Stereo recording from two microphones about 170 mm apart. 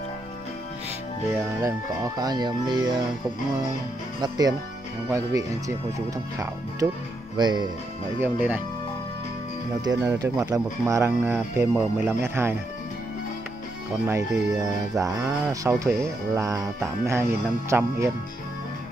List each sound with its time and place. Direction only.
1.6 s speech: 20° right (ahead or behind)
4.2 s speech: 20° right (ahead or behind)
6.8 s speech: 20° right (ahead or behind)
8.2 s speech: 10° right (ahead or behind)
10.0 s speech: 20° right (ahead or behind)
14.0 s speech: 20° right (ahead or behind)